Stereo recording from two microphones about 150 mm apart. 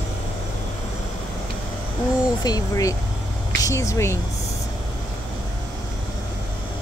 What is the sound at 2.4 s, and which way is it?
Speech, 25° left (ahead or behind).